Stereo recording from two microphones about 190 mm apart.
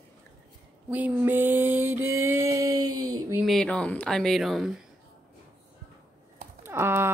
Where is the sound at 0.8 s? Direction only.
10° right (ahead or behind).